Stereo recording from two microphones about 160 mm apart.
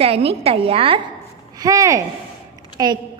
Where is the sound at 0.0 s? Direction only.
40° right (ahead or behind).